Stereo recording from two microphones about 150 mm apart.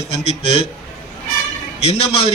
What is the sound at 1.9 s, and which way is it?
Speech, 40° left (ahead or behind).